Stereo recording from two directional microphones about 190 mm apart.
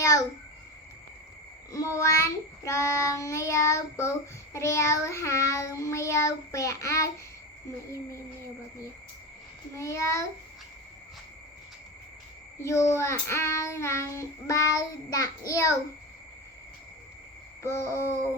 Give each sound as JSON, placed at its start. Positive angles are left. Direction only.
{"t": 0.0, "sound": "a child's voice", "side_deg": 20}
{"t": 1.7, "sound": "child singing", "side_deg": 15}
{"t": 9.7, "sound": "child singing", "side_deg": 15}
{"t": 12.6, "sound": "child singing", "side_deg": 15}
{"t": 17.6, "sound": "child singing", "side_deg": 15}